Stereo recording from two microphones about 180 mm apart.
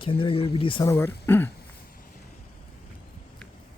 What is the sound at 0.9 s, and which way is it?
Speech, 10° left (ahead or behind).